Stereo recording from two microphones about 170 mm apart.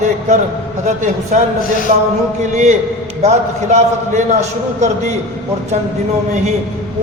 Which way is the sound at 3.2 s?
40° right (ahead or behind).